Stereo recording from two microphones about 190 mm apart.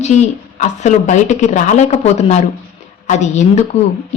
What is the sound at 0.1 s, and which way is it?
A man's voice, 40° left (ahead or behind).